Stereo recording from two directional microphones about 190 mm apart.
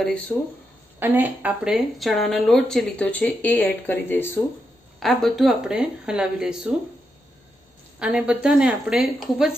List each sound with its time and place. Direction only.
0.0 s a woman's voice: 5° left (ahead or behind)
0.9 s a woman's voice: 10° right (ahead or behind); by 4.4 s 10° left (ahead or behind)
5.0 s a woman's voice: centre (ahead or behind)
8.0 s a woman's voice: 5° right (ahead or behind)